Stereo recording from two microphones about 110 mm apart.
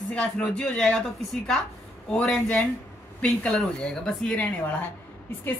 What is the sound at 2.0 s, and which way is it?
A woman's voice, 5° left (ahead or behind).